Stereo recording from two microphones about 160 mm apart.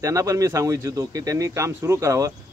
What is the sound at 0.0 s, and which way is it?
A man's voice, 20° right (ahead or behind).